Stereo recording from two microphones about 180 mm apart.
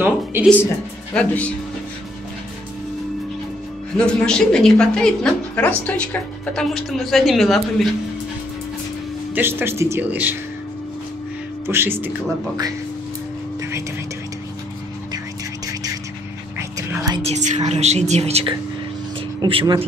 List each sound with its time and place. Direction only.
0.0 s a sound: 10° right (ahead or behind)
1.1 s speech: 5° left (ahead or behind)
3.9 s a woman's voice: 5° left (ahead or behind)
9.3 s speech: 10° right (ahead or behind)
11.6 s speech: 15° right (ahead or behind)
13.6 s a sound: 15° right (ahead or behind)
15.6 s vehicle: 20° right (ahead or behind)
16.5 s a sound: 15° right (ahead or behind)
17.2 s a woman's voice: 40° right (ahead or behind)